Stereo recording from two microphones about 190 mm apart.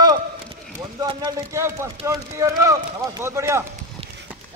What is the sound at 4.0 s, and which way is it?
Clip-clop, 30° right (ahead or behind).